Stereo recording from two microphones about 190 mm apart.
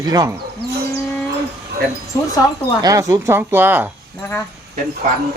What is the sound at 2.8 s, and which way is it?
Speech, 15° right (ahead or behind).